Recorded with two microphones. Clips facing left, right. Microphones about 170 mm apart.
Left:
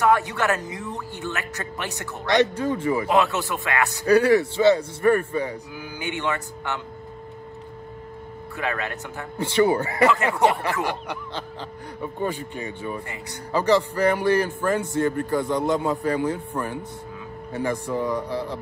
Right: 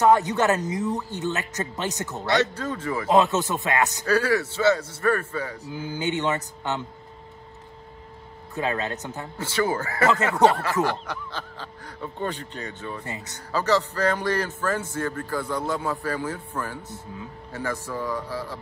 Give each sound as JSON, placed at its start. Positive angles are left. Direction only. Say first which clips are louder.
{"t": 0.0, "sound": "speech", "louder": "right 2 dB", "side_deg": -20}
{"t": 2.3, "sound": "a man's voice", "louder": "left 4 dB", "side_deg": 15}
{"t": 3.1, "sound": "speech", "louder": "right 5 dB", "side_deg": -20}
{"t": 4.0, "sound": "a man's voice", "louder": "left 10 dB", "side_deg": 15}
{"t": 5.7, "sound": "speech", "louder": "right 4 dB", "side_deg": -20}
{"t": 8.5, "sound": "speech", "louder": "right 2 dB", "side_deg": -20}
{"t": 9.4, "sound": "a man's voice", "louder": "left 6 dB", "side_deg": 15}
{"t": 13.0, "sound": "speech", "louder": "even", "side_deg": -20}
{"t": 13.5, "sound": "a man's voice", "louder": "left 3 dB", "side_deg": 15}